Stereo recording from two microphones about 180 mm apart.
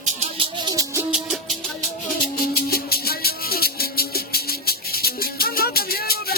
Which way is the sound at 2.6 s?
60° left (ahead or behind).